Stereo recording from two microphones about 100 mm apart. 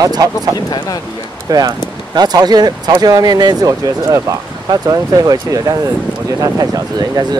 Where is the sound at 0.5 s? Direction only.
40° left (ahead or behind).